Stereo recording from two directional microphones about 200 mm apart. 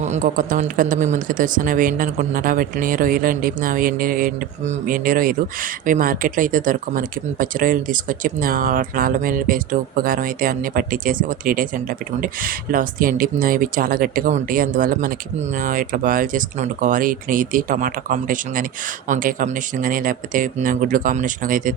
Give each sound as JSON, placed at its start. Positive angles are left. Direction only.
{"t": 0.0, "sound": "speech", "side_deg": -40}